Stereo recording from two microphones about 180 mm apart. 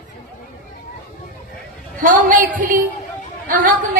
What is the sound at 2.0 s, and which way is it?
Speech, 50° right (ahead or behind).